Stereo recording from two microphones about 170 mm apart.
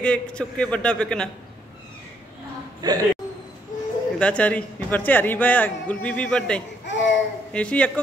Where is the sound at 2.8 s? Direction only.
25° right (ahead or behind).